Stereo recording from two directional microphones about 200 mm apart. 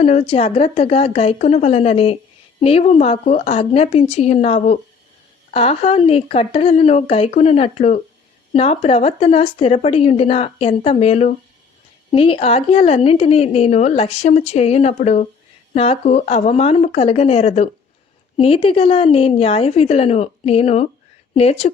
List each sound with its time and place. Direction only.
0.0 s a woman's voice: 30° left (ahead or behind)